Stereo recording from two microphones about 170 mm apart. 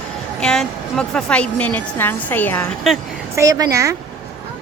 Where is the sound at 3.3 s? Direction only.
20° right (ahead or behind).